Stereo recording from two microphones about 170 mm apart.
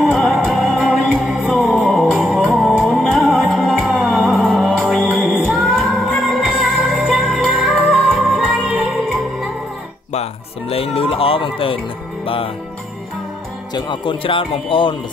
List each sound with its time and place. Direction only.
0.0 s music: centre (ahead or behind)
11.0 s music: 35° left (ahead or behind)
13.7 s speech: 30° left (ahead or behind)